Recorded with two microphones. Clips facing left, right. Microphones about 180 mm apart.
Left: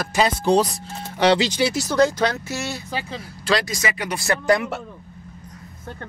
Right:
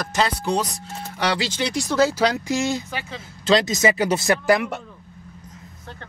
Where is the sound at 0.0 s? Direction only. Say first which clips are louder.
Left 2 dB; 10° left (ahead or behind).